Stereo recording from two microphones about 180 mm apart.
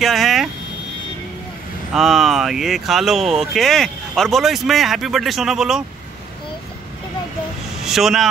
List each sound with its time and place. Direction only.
0.0 s a sound: centre (ahead or behind)
2.0 s speech: centre (ahead or behind)
7.8 s speech: centre (ahead or behind)